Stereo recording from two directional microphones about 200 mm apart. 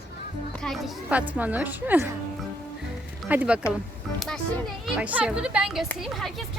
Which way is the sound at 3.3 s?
5° right (ahead or behind).